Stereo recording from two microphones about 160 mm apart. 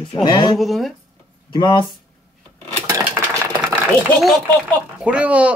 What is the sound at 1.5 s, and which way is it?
Speech, 30° left (ahead or behind).